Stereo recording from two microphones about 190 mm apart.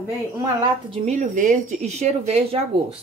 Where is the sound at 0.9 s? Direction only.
35° right (ahead or behind).